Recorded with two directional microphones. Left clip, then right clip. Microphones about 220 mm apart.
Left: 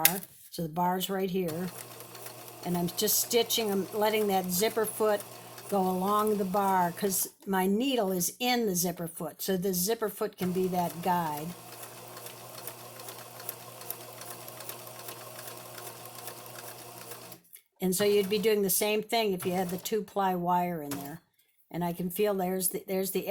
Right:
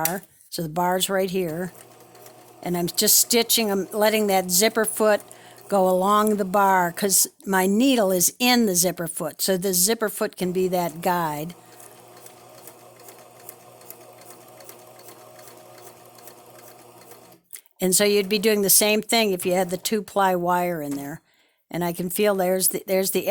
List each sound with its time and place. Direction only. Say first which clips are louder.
0.1 s speech: right 7 dB; 50° right (ahead or behind)
2.6 s speech: right 8 dB; 50° right (ahead or behind)
17.7 s speech: right 6 dB; 45° right (ahead or behind)